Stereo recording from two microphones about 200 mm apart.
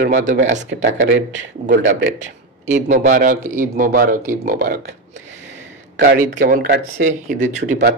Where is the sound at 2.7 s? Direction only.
40° right (ahead or behind).